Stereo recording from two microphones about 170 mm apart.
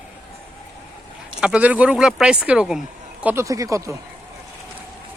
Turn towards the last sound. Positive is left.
turn(degrees=-20)  # may be behind; listen again after turning